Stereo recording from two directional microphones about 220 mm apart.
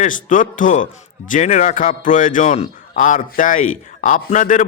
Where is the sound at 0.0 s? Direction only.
35° left (ahead or behind).